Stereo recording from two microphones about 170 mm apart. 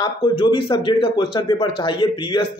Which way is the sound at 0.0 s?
25° left (ahead or behind).